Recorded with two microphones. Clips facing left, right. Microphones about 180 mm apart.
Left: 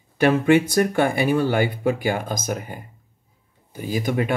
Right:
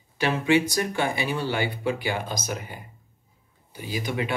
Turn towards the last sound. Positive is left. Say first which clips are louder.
# left 6 dB
turn(degrees=45)  # may be behind; listen again after turning